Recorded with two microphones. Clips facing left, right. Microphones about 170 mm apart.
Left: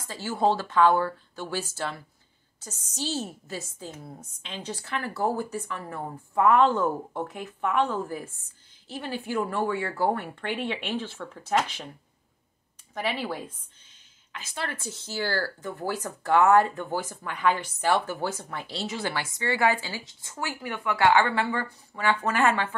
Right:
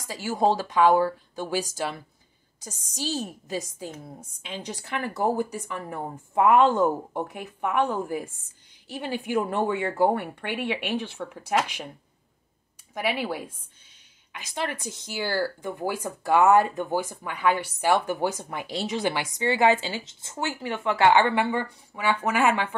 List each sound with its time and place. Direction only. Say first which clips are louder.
0.0 s speech: right 1 dB; 15° right (ahead or behind)
12.9 s speech: right 2 dB; 10° right (ahead or behind)